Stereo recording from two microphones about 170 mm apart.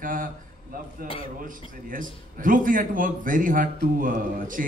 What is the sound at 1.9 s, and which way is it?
A man's voice, 55° right (ahead or behind).